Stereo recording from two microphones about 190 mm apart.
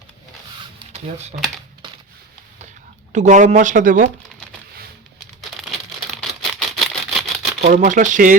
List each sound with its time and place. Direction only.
0.9 s speech: 35° right (ahead or behind)
3.1 s speech: 40° right (ahead or behind)
6.1 s a sound: centre (ahead or behind)
7.6 s speech: 45° right (ahead or behind)